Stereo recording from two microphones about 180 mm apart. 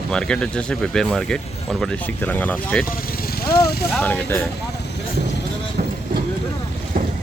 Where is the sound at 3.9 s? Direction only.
10° left (ahead or behind).